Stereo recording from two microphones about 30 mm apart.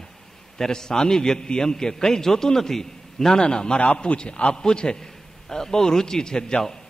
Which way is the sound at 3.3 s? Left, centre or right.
Left.